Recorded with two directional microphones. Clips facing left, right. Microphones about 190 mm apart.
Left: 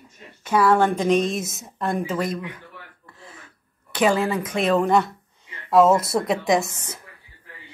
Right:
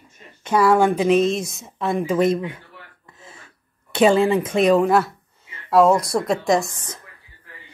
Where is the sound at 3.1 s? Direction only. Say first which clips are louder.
Left 1 dB; 25° right (ahead or behind).